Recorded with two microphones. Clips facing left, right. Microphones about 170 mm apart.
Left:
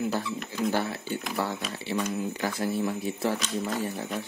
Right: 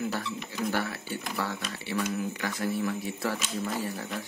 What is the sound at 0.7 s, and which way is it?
Speech, 25° left (ahead or behind).